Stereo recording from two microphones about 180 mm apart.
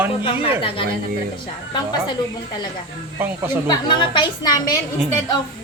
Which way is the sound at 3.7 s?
25° left (ahead or behind).